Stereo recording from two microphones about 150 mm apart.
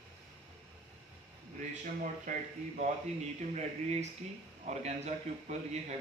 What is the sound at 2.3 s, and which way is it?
Speech, 55° right (ahead or behind).